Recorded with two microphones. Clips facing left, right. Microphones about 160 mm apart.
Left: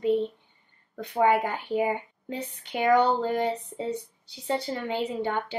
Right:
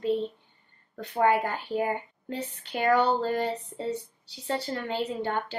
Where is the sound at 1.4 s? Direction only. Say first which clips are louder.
Left 2 dB; 15° left (ahead or behind).